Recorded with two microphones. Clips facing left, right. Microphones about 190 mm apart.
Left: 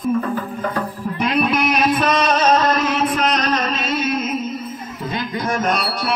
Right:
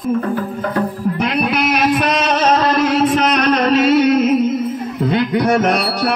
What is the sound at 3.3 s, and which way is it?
Music, 65° right (ahead or behind).